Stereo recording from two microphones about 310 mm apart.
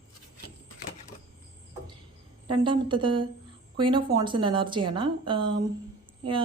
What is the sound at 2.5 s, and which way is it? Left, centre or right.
A woman's voice, centre.